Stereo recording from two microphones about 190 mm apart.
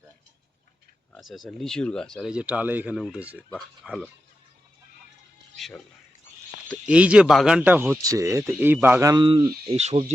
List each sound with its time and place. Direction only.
1.1 s speech: centre (ahead or behind)
5.5 s music: centre (ahead or behind)
6.8 s speech: 5° right (ahead or behind); by 9.7 s 25° right (ahead or behind)
9.7 s speech: 35° right (ahead or behind)